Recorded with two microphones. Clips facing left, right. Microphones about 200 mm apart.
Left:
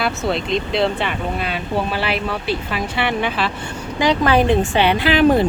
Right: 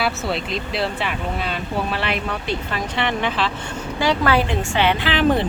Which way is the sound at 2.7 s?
10° left (ahead or behind).